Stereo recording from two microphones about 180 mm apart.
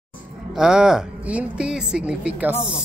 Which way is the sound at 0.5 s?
5° right (ahead or behind).